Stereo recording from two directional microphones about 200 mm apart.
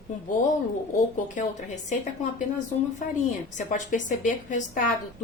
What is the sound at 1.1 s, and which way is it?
Speech, 35° left (ahead or behind).